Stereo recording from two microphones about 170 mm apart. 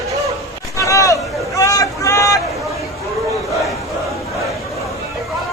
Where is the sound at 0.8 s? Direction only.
20° left (ahead or behind).